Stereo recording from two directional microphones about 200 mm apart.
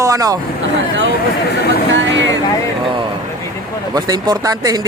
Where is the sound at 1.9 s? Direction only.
65° right (ahead or behind).